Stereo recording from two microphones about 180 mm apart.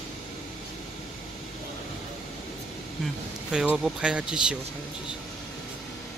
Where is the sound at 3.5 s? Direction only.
5° right (ahead or behind).